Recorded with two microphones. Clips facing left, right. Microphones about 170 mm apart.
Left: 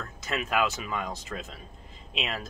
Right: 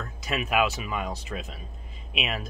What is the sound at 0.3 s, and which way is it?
Speech, 15° right (ahead or behind).